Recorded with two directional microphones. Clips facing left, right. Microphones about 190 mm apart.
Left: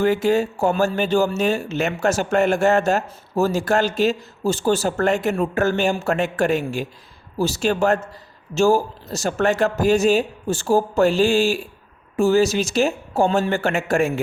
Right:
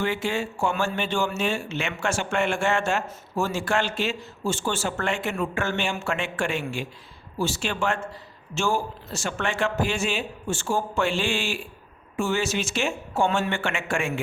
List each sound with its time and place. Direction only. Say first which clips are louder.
0.0 s speech: left 9 dB; 40° left (ahead or behind)